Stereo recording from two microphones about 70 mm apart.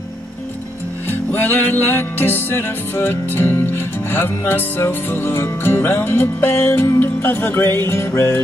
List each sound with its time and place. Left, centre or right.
1.0 s music: left